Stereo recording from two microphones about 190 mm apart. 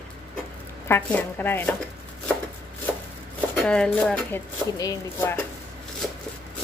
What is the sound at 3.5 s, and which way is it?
Speech, 5° left (ahead or behind).